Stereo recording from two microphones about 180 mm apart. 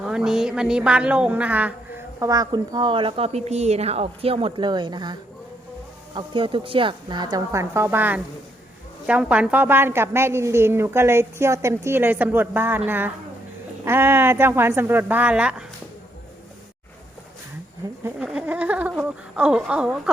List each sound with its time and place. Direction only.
0.0 s a woman's voice: 5° right (ahead or behind); by 5.1 s 25° right (ahead or behind)
6.1 s a woman's voice: 30° right (ahead or behind); by 15.6 s 5° right (ahead or behind)
18.2 s a woman's voice: 5° right (ahead or behind)